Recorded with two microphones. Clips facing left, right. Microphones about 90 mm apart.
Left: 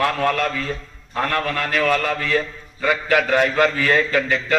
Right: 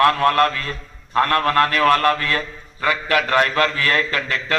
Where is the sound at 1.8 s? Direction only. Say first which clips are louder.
Right 4 dB; 65° right (ahead or behind).